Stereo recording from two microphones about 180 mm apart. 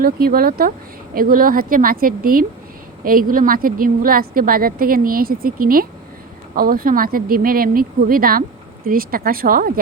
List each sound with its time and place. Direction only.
0.0 s a woman's voice: 55° right (ahead or behind)